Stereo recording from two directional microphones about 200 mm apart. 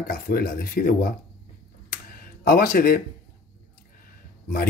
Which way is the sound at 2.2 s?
45° left (ahead or behind).